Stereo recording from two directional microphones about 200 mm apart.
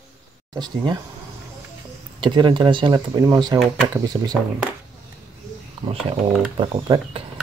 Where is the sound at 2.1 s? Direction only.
25° right (ahead or behind).